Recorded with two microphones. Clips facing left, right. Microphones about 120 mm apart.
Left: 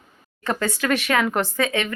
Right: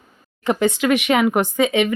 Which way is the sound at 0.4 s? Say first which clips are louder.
Right 6 dB; 20° right (ahead or behind).